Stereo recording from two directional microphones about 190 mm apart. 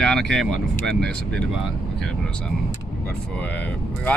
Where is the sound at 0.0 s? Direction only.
Centre (ahead or behind).